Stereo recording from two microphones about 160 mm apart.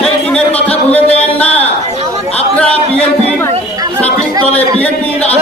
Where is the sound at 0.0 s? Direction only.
5° left (ahead or behind).